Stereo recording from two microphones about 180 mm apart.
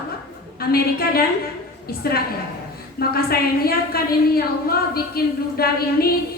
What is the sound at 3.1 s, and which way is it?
A woman's voice, 60° left (ahead or behind).